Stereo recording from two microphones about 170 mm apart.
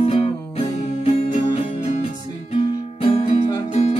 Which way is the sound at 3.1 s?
35° left (ahead or behind).